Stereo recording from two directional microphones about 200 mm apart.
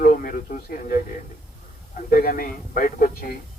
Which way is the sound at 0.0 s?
45° left (ahead or behind).